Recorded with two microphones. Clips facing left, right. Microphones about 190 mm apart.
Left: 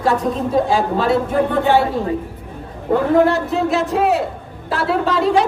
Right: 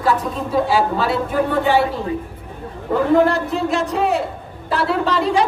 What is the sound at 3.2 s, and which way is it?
Speech, centre (ahead or behind).